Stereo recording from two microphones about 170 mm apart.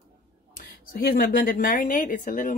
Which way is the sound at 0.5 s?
60° left (ahead or behind).